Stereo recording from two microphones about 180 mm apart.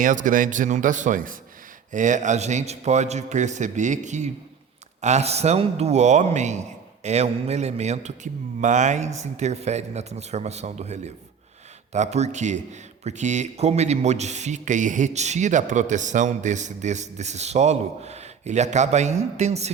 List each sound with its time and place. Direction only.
0.0 s a man's voice: 45° right (ahead or behind)